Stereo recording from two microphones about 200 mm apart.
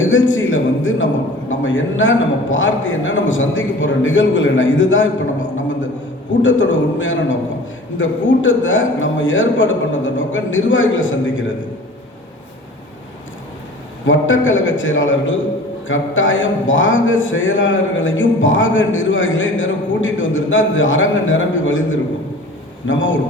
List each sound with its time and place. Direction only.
0.0 s a man's voice: 75° left (ahead or behind)
6.4 s speech: 70° left (ahead or behind)
14.1 s speech: 75° left (ahead or behind)